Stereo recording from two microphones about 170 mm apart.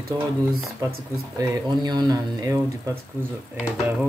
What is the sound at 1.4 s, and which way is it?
Speech, 20° right (ahead or behind).